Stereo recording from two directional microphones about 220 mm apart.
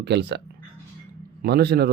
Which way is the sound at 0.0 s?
50° right (ahead or behind).